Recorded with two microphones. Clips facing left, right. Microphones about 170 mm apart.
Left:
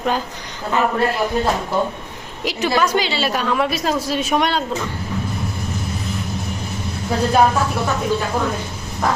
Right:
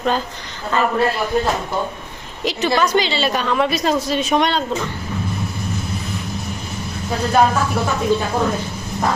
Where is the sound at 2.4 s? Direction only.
10° left (ahead or behind).